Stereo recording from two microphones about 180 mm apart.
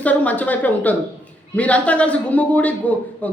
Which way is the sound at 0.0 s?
10° left (ahead or behind).